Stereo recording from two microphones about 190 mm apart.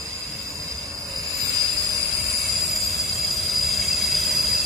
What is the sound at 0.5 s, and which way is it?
Train, 15° right (ahead or behind).